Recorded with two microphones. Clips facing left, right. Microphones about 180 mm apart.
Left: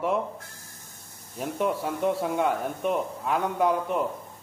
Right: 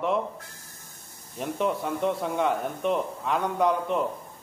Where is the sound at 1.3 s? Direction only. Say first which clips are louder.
Even; 5° left (ahead or behind).